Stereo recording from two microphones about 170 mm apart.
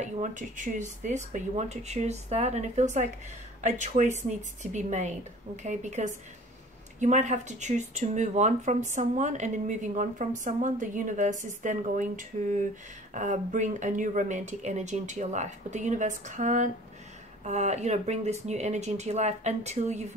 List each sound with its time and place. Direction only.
0.0 s speech: 45° right (ahead or behind)